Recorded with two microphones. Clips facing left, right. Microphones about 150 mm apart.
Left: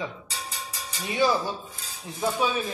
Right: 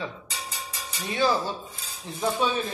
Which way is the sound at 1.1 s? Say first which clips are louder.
Left 1 dB; 10° left (ahead or behind).